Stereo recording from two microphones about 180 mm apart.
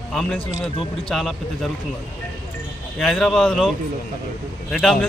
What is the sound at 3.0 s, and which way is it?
A man's voice, 5° left (ahead or behind).